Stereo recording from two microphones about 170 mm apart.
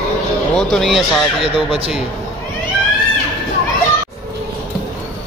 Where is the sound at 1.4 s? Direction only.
35° right (ahead or behind).